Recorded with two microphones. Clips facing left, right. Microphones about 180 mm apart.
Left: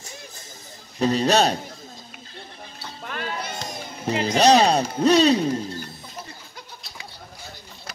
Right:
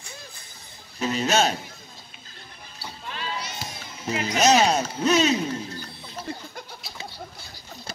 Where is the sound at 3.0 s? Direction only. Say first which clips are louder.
Left 3 dB; 55° left (ahead or behind).